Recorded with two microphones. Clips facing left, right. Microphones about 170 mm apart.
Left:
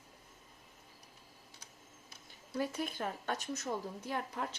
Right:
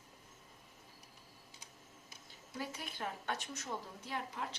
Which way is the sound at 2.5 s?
45° left (ahead or behind).